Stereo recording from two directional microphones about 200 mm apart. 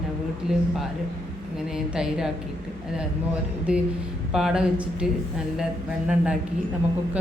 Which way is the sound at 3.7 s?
5° right (ahead or behind).